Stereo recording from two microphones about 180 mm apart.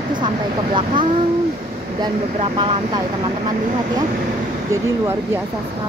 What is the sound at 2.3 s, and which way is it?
Speech, 30° right (ahead or behind).